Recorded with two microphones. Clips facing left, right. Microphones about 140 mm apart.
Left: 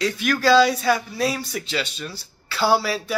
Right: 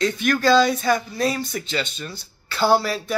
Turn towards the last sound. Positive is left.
turn(degrees=5)  # may be behind; listen again after turning